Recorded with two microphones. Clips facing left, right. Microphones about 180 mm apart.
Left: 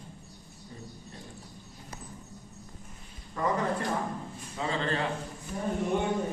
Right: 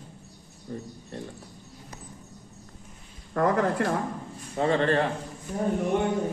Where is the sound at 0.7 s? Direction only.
55° right (ahead or behind).